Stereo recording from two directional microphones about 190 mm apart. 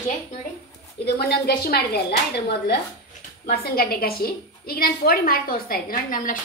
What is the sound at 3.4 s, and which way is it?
A woman's voice, 55° left (ahead or behind).